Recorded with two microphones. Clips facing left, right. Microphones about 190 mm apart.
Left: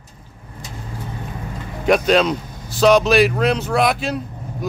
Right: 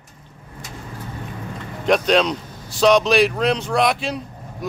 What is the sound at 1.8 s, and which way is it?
Speech, 5° left (ahead or behind).